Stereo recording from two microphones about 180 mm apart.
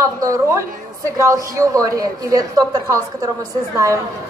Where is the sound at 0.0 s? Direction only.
15° right (ahead or behind).